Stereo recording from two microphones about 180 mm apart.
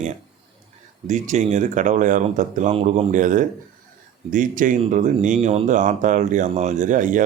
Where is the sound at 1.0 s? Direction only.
40° right (ahead or behind).